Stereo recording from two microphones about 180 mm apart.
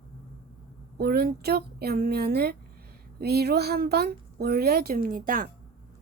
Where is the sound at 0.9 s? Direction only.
60° right (ahead or behind).